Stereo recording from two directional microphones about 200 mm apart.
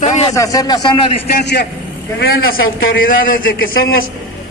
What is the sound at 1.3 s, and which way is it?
Speech, 55° left (ahead or behind).